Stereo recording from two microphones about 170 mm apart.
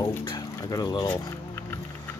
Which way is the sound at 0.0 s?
25° left (ahead or behind).